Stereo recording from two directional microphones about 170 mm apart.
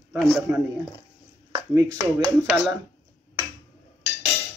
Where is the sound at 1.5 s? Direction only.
20° right (ahead or behind).